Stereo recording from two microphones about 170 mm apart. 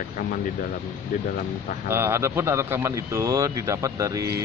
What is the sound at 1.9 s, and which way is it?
Speech, 15° right (ahead or behind).